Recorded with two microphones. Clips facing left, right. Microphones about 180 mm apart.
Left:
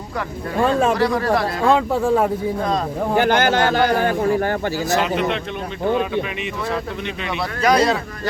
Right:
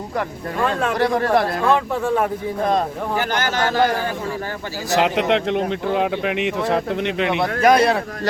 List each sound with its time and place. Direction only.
1.9 s speech: 10° left (ahead or behind)
3.2 s a man's voice: 55° left (ahead or behind)
4.9 s speech: 85° right
7.6 s speech: 55° right (ahead or behind)